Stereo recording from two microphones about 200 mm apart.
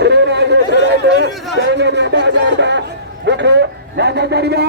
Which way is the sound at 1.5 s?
60° right (ahead or behind).